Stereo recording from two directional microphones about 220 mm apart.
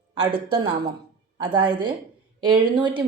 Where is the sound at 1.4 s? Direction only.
20° right (ahead or behind).